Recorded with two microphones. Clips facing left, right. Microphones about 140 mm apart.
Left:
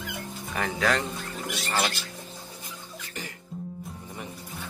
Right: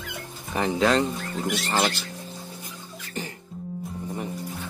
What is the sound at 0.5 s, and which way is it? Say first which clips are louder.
Speech: right 5 dB; 25° right (ahead or behind).